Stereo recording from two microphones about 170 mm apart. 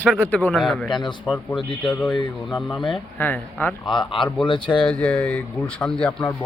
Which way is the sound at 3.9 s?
30° left (ahead or behind).